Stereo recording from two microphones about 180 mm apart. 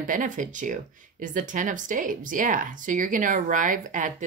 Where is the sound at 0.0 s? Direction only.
45° right (ahead or behind).